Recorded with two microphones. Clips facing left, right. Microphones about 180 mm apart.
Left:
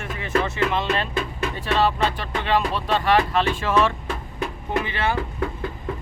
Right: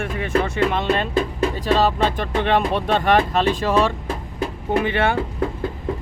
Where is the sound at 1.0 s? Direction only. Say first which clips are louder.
Right 5 dB; 35° right (ahead or behind).